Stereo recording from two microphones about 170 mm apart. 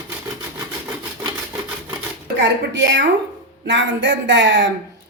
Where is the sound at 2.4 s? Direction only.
90° right.